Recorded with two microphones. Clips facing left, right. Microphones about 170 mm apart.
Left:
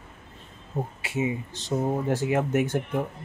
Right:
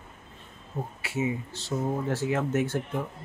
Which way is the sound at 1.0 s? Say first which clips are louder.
Even; 20° left (ahead or behind).